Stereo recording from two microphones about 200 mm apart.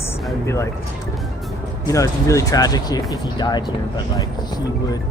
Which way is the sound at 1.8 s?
15° left (ahead or behind).